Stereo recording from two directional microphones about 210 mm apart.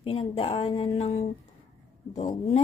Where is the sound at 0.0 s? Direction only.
25° left (ahead or behind).